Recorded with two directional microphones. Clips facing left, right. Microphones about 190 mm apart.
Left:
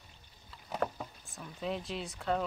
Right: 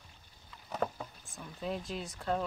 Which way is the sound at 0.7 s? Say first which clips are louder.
Even; centre (ahead or behind).